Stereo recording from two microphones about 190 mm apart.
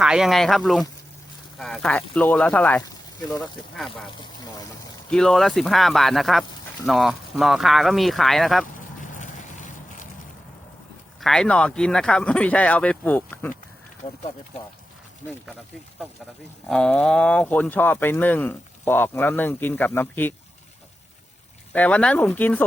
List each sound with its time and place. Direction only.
0.0 s speech: 5° right (ahead or behind)
4.0 s a sound: 25° left (ahead or behind)
5.1 s speech: 5° left (ahead or behind)
9.0 s a sound: 40° left (ahead or behind)
11.2 s speech: 5° left (ahead or behind)
16.6 s speech: 5° left (ahead or behind)
21.7 s speech: 5° left (ahead or behind)